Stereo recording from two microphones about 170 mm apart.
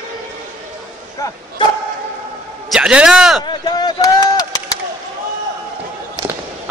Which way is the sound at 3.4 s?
25° left (ahead or behind).